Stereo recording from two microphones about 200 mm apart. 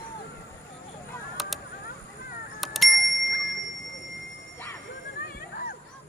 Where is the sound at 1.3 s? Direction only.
Centre (ahead or behind).